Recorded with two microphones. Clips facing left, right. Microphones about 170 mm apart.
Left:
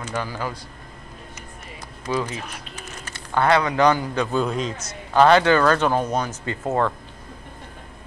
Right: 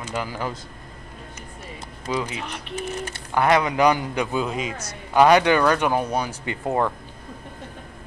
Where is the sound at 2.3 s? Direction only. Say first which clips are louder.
Right 2 dB; 70° right (ahead or behind).